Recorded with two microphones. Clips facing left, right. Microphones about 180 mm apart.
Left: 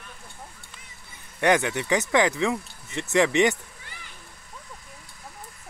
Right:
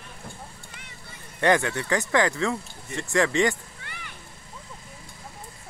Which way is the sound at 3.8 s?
65° right (ahead or behind).